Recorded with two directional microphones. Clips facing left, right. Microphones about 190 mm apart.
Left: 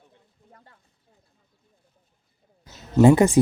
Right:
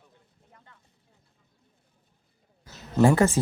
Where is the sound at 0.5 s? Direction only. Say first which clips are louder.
Left 3 dB; 35° left (ahead or behind).